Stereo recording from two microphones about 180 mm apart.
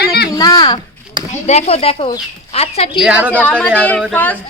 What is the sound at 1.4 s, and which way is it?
Speech, 40° left (ahead or behind).